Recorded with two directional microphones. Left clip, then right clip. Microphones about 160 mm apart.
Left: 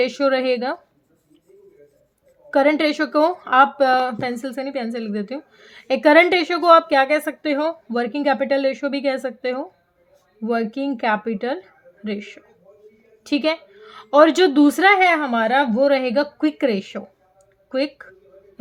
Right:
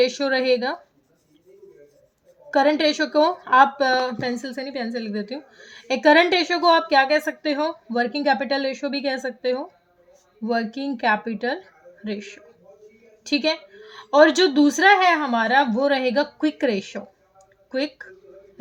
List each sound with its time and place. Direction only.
0.0 s a woman's voice: 40° left (ahead or behind)
2.5 s a woman's voice: 40° left (ahead or behind)